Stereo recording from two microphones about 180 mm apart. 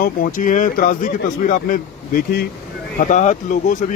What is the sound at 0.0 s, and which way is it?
Speech, 50° left (ahead or behind).